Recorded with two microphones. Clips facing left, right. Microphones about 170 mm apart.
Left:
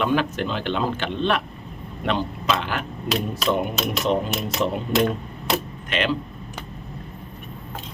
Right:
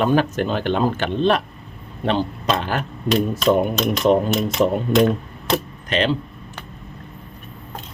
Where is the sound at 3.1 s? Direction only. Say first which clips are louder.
Right 6 dB; 5° left (ahead or behind).